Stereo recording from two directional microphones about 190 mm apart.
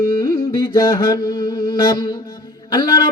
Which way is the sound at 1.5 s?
25° left (ahead or behind).